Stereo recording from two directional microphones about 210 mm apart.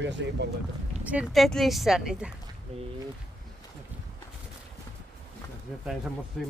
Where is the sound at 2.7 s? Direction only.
30° right (ahead or behind).